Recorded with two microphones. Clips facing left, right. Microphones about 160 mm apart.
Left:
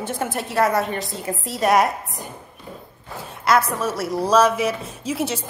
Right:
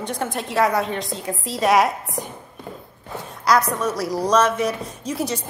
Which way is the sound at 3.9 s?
Centre (ahead or behind).